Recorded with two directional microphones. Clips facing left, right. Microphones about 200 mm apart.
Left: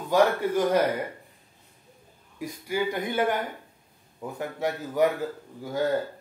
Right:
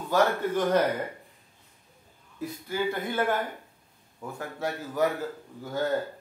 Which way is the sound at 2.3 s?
10° left (ahead or behind).